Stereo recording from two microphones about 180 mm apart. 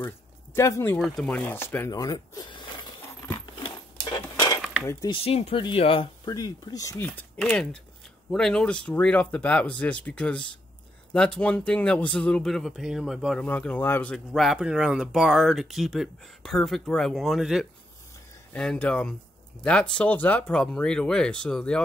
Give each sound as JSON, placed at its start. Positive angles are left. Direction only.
{"t": 0.6, "sound": "speech", "side_deg": 15}
{"t": 0.9, "sound": "speech", "side_deg": 0}
{"t": 1.9, "sound": "speech", "side_deg": 20}
{"t": 3.5, "sound": "dishes", "side_deg": 25}
{"t": 4.8, "sound": "speech", "side_deg": 25}
{"t": 7.2, "sound": "speech", "side_deg": 5}